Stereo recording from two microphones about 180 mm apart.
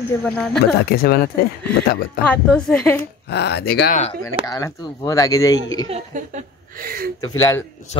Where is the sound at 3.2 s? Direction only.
65° left (ahead or behind).